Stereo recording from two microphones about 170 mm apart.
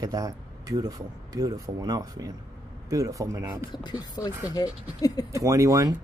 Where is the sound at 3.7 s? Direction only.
25° left (ahead or behind).